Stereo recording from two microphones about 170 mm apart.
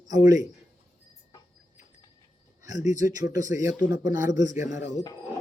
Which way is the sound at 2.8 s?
45° left (ahead or behind).